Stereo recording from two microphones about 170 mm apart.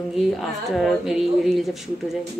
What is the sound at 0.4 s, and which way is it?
Speech, centre (ahead or behind).